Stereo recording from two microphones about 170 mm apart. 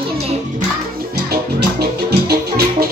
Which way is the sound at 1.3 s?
65° right (ahead or behind).